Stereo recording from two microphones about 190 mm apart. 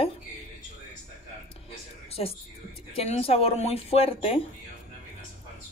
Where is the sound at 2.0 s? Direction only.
30° left (ahead or behind).